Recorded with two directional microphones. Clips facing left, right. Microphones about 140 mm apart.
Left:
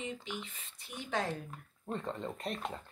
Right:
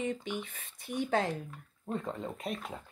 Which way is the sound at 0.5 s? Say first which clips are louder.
Right 9 dB; 50° right (ahead or behind).